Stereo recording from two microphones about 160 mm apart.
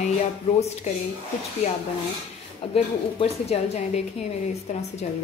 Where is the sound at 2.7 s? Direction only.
40° left (ahead or behind).